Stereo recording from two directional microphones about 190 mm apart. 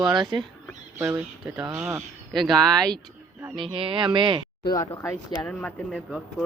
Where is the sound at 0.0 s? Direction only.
20° right (ahead or behind).